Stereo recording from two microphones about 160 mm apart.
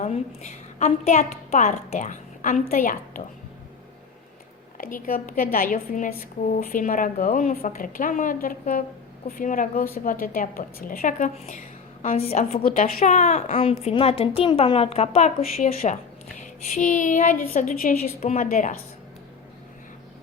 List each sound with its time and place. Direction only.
0.0 s a woman's voice: 45° left (ahead or behind)
4.8 s a woman's voice: 60° left (ahead or behind)
12.1 s a woman's voice: 40° left (ahead or behind)
12.6 s a woman's voice: 60° left (ahead or behind)